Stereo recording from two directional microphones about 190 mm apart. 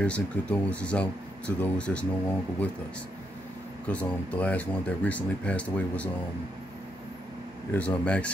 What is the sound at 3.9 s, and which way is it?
Speech, 5° left (ahead or behind).